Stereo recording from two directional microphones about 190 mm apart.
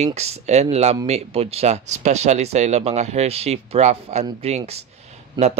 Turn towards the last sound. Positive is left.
turn(degrees=-35)  # may be behind; listen again after turning